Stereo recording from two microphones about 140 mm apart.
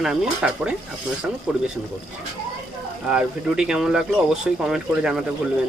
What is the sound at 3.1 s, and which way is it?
Speech, 5° right (ahead or behind).